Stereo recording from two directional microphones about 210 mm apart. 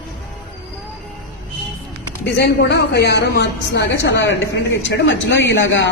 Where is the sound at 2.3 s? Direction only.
50° left (ahead or behind).